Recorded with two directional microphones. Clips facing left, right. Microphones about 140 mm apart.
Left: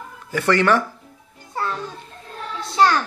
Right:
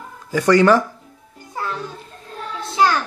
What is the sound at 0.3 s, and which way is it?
Speech, 15° right (ahead or behind).